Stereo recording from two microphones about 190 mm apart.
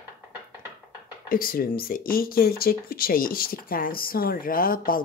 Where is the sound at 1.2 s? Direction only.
50° left (ahead or behind).